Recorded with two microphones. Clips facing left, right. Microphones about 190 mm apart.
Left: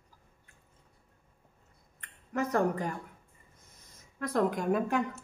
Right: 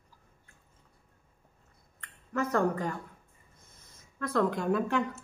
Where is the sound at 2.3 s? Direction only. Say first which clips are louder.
Even; 20° left (ahead or behind).